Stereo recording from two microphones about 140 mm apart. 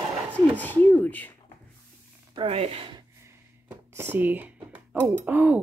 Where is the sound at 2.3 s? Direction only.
45° right (ahead or behind).